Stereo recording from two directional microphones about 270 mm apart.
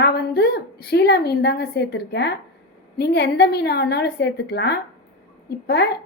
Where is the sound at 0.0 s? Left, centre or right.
Left.